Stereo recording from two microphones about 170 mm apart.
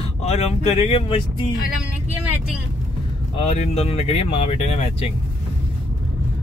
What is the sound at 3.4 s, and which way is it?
Speech, 40° left (ahead or behind).